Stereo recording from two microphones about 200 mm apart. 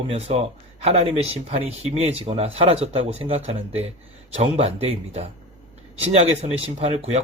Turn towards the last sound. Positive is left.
turn(degrees=-30)  # may be behind; listen again after turning